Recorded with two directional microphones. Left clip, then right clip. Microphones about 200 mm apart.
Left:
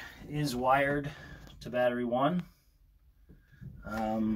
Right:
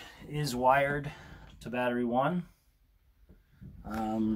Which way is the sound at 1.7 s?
10° right (ahead or behind).